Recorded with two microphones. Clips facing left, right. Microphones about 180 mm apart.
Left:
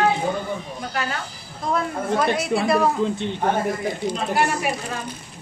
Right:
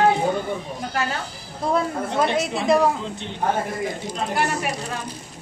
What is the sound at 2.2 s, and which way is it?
Speech, 20° right (ahead or behind).